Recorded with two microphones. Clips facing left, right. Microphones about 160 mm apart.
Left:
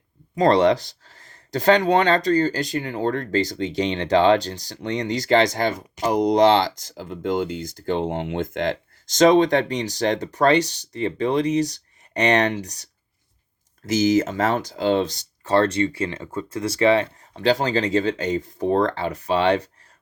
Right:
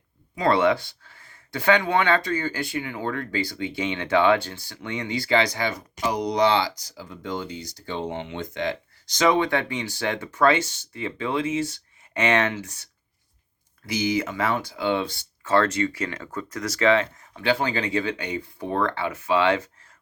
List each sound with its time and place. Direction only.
0.3 s speech: 40° left (ahead or behind)